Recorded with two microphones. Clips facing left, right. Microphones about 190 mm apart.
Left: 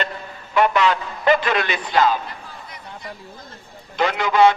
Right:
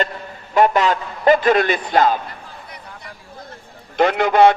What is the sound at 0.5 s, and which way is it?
A man's voice, 45° right (ahead or behind).